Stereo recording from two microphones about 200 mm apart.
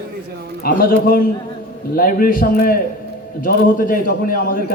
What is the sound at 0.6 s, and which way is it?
A man's voice, 45° left (ahead or behind).